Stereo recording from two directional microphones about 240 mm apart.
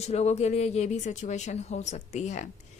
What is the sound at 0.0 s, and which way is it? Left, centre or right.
A woman's voice, left.